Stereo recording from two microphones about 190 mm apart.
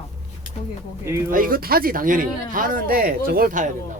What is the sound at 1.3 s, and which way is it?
Speech, 50° right (ahead or behind).